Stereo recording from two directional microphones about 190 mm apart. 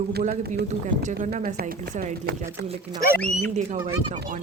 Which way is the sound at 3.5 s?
40° right (ahead or behind).